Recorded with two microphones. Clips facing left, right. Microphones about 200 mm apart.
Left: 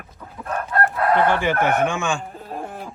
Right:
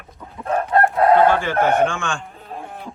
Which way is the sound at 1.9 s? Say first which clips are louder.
Left 3 dB; 5° left (ahead or behind).